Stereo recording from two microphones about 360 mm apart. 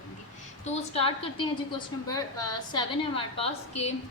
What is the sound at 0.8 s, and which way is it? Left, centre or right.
Speech, centre.